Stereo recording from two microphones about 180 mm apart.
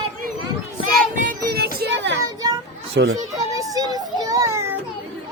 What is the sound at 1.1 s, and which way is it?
Child singing, 50° right (ahead or behind).